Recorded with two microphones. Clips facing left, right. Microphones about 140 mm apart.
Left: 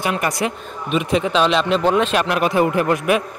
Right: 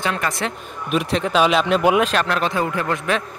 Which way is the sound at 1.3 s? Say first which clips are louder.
Right 2 dB; 5° right (ahead or behind).